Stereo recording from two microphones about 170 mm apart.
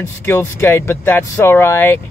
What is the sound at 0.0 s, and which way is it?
Speech, 15° left (ahead or behind).